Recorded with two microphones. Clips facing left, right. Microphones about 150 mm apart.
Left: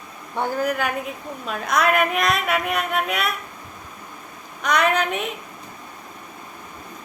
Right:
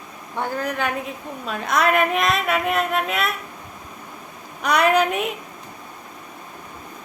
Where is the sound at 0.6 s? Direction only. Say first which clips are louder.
Left 1 dB; 5° left (ahead or behind).